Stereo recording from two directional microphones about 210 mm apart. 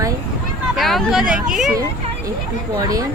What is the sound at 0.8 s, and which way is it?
Speech, centre (ahead or behind).